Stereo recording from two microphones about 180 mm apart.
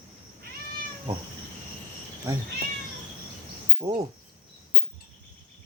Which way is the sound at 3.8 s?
25° right (ahead or behind).